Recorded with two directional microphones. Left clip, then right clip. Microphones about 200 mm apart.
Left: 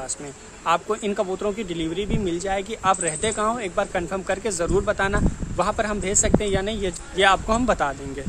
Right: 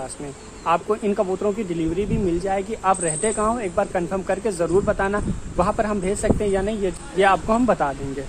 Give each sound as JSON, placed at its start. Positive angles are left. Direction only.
{"t": 0.7, "sound": "a man's voice", "side_deg": 15}
{"t": 5.6, "sound": "a man's voice", "side_deg": 10}